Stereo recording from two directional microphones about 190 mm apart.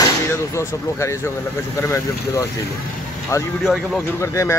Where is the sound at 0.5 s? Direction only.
15° left (ahead or behind).